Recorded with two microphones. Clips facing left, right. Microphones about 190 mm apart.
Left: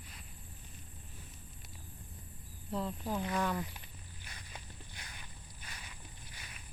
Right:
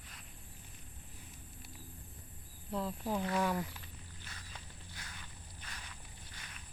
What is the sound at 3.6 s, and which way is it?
Walk, 20° left (ahead or behind).